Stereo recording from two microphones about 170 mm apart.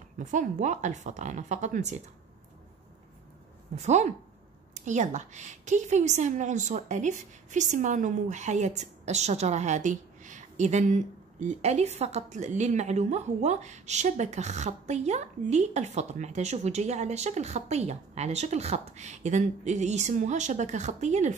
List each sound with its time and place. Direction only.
0.2 s a woman's voice: 45° right (ahead or behind)
3.7 s a woman's voice: 45° right (ahead or behind)